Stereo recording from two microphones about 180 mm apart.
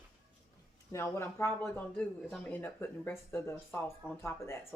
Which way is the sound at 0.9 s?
15° left (ahead or behind).